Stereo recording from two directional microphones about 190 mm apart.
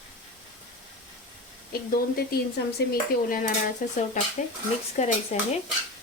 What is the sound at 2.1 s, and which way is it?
Stir, 55° left (ahead or behind).